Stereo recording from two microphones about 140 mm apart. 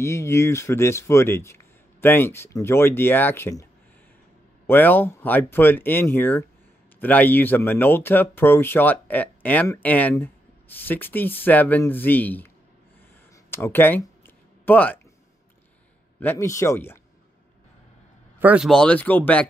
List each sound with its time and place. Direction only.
0.0 s speech: 20° left (ahead or behind)
4.6 s speech: 15° left (ahead or behind)
13.5 s a sound: 15° left (ahead or behind)
16.2 s speech: 15° left (ahead or behind)
18.4 s speech: 10° right (ahead or behind)
18.7 s speech: 5° left (ahead or behind)